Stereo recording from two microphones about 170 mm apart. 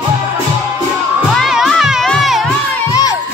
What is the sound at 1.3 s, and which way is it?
Children shouting, centre (ahead or behind).